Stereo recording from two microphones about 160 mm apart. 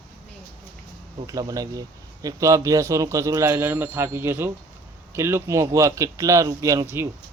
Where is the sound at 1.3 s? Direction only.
20° right (ahead or behind).